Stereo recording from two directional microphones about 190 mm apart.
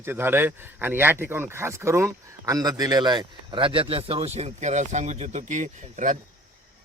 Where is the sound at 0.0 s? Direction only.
10° right (ahead or behind); by 6.1 s 40° right (ahead or behind).